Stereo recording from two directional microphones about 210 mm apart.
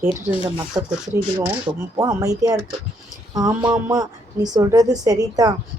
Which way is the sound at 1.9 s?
15° right (ahead or behind).